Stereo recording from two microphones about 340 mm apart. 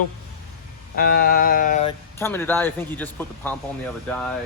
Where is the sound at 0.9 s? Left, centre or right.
Left.